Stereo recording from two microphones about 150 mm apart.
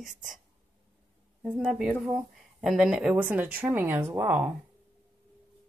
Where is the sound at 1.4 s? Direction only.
10° right (ahead or behind).